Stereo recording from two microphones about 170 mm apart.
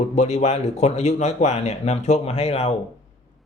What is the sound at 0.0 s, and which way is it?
A man's voice, 40° left (ahead or behind).